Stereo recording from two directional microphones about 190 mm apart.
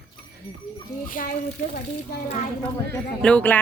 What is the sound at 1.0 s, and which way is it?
Speech, 45° left (ahead or behind).